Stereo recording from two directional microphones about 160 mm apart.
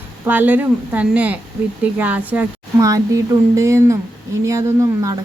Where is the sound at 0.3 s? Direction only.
10° right (ahead or behind).